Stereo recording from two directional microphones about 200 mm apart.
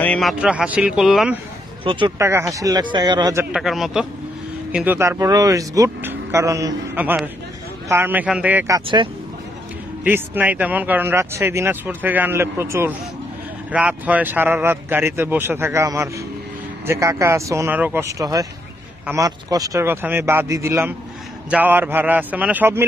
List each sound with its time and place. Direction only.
0.0 s speech: 5° left (ahead or behind)
1.9 s speech: 25° right (ahead or behind)
3.5 s speech: centre (ahead or behind); by 9.1 s 25° right (ahead or behind)
10.0 s speech: 10° right (ahead or behind)